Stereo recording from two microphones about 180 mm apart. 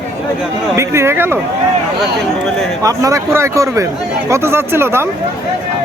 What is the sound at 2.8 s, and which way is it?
Speech, 20° right (ahead or behind).